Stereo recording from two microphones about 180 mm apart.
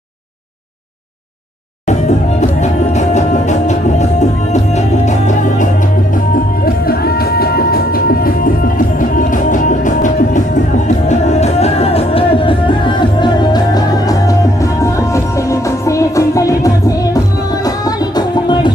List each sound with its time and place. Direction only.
1.9 s music: 40° left (ahead or behind)
6.1 s music: 55° left (ahead or behind); by 18.7 s 25° left (ahead or behind)